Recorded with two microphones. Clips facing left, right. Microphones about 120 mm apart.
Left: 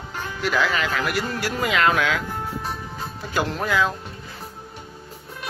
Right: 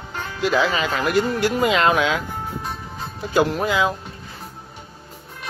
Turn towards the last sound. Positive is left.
turn(degrees=-15)  # may be behind; listen again after turning